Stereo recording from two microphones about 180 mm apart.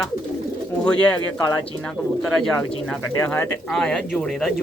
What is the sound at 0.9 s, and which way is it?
Speech, 5° left (ahead or behind).